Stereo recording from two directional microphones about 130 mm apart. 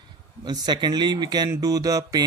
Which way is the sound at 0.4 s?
35° right (ahead or behind).